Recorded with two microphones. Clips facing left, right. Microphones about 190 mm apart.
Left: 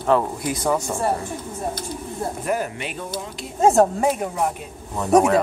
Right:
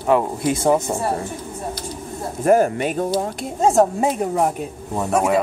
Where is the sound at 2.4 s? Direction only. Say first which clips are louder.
Right 12 dB; 45° right (ahead or behind).